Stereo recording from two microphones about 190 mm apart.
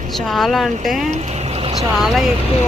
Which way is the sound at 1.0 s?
35° right (ahead or behind).